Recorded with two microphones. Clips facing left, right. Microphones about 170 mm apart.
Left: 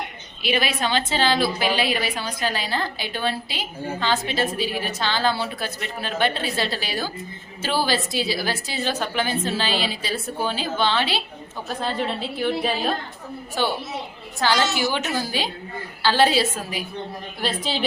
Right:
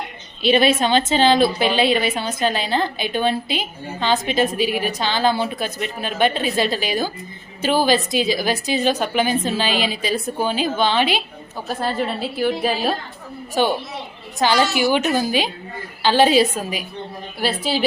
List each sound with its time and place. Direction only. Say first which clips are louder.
0.4 s a woman's voice: right 7 dB; 25° right (ahead or behind)
11.8 s a woman's voice: right 3 dB; 5° right (ahead or behind)
17.4 s a woman's voice: right 4 dB; 5° right (ahead or behind)